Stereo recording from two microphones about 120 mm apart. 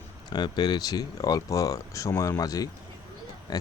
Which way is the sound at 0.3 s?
35° left (ahead or behind).